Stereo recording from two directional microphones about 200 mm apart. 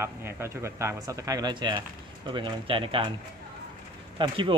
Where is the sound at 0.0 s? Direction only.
10° right (ahead or behind).